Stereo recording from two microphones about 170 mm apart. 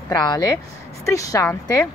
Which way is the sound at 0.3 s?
20° left (ahead or behind).